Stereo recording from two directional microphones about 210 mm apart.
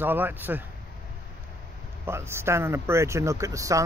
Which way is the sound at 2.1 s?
10° right (ahead or behind).